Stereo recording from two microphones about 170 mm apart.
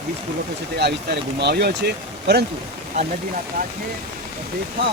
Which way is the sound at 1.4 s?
75° right (ahead or behind).